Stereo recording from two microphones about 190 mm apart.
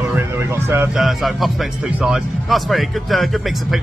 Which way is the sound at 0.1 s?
10° right (ahead or behind).